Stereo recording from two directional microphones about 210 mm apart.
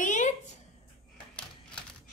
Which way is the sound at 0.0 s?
35° left (ahead or behind).